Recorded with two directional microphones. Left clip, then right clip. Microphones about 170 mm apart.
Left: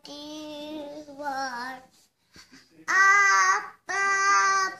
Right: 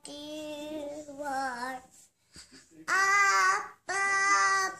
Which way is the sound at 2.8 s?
50° right (ahead or behind).